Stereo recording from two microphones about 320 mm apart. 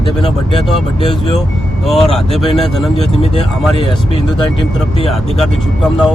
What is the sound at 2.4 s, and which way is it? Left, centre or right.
Speech, centre.